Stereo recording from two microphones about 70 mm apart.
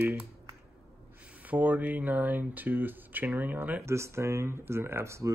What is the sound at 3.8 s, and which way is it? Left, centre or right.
Speech, right.